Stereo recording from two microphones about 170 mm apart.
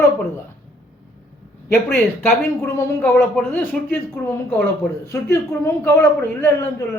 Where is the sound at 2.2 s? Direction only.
15° left (ahead or behind).